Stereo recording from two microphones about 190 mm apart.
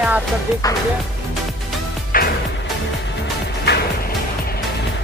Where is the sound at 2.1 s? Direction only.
50° left (ahead or behind).